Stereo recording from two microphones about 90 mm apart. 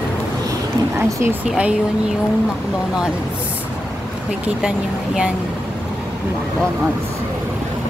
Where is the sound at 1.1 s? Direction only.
35° right (ahead or behind).